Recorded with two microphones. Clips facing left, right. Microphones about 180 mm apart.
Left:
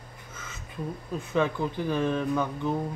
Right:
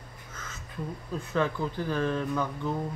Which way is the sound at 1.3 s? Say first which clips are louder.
Left 2 dB; 15° left (ahead or behind).